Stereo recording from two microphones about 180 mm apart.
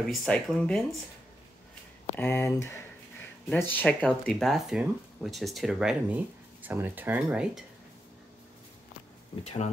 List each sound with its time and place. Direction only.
0.1 s speech: 5° left (ahead or behind)
2.1 s speech: 10° left (ahead or behind); by 7.6 s 10° right (ahead or behind)
9.4 s speech: 40° left (ahead or behind)